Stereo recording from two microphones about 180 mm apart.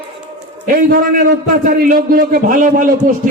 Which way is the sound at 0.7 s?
55° right (ahead or behind).